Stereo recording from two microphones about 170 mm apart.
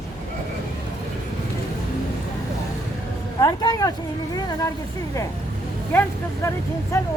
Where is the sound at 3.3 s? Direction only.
25° left (ahead or behind).